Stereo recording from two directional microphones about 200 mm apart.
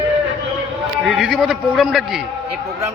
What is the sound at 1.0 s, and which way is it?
A man's voice, centre (ahead or behind).